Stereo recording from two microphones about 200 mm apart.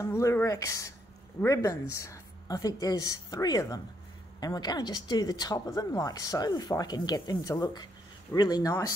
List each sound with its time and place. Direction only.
0.0 s a woman's voice: 15° left (ahead or behind)